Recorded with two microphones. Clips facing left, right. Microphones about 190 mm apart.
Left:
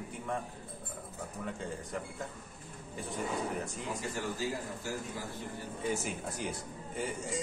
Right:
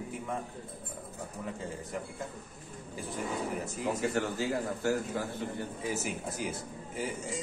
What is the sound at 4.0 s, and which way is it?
Speech, 70° right (ahead or behind).